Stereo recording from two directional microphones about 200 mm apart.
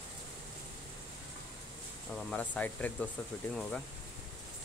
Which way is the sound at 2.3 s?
5° left (ahead or behind).